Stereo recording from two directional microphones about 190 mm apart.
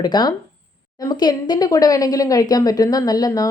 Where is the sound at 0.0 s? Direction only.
20° left (ahead or behind).